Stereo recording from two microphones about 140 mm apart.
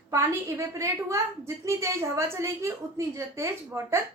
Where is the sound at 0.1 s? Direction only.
20° right (ahead or behind).